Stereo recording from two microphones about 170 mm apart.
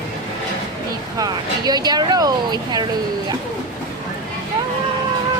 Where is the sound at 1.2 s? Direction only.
25° right (ahead or behind).